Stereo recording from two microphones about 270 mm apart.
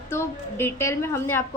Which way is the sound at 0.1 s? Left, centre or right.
Centre.